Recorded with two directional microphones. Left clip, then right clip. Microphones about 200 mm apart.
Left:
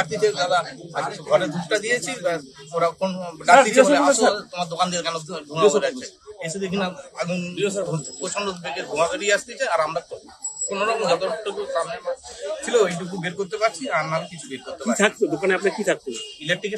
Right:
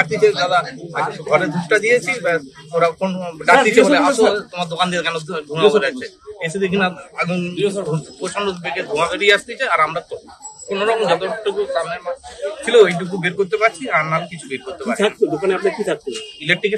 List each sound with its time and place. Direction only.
0.0 s a man's voice: 10° left (ahead or behind)
7.5 s a man's voice: 25° left (ahead or behind)
8.2 s a man's voice: 5° left (ahead or behind)
15.0 s speech: 45° left (ahead or behind)
16.1 s a man's voice: 10° left (ahead or behind)